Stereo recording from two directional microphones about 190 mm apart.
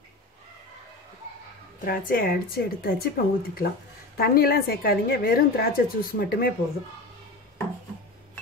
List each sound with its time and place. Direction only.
1.9 s a woman's voice: 50° left (ahead or behind)